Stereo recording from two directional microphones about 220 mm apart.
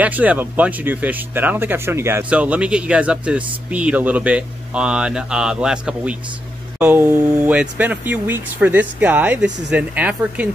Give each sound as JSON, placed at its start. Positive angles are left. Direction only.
{"t": 0.0, "sound": "speech", "side_deg": -5}